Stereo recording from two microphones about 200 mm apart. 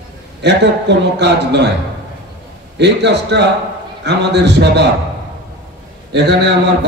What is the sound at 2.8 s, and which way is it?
A man's voice, 60° right (ahead or behind).